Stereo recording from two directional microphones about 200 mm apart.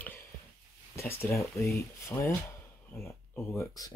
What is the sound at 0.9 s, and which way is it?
Speech, 10° left (ahead or behind).